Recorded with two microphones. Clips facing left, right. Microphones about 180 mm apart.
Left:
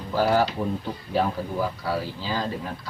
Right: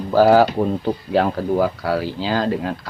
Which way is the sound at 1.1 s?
75° right (ahead or behind).